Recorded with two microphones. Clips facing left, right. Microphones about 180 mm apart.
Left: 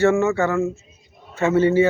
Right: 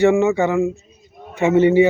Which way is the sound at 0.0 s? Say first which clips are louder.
Right 3 dB; 15° right (ahead or behind).